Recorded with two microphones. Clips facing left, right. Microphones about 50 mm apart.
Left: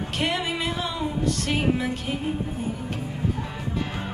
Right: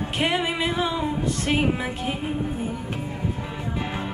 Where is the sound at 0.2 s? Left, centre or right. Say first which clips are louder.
Right 3 dB; centre.